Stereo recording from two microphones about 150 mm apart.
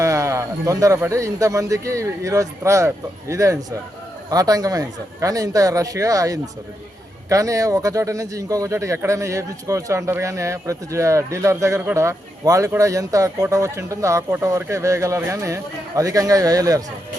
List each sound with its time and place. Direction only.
0.0 s speech: 20° right (ahead or behind)